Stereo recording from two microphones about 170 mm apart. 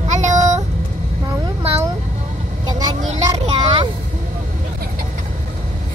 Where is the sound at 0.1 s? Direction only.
45° right (ahead or behind).